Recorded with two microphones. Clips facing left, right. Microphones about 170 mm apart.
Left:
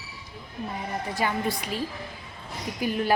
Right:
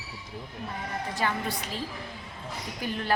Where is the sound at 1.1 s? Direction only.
10° left (ahead or behind).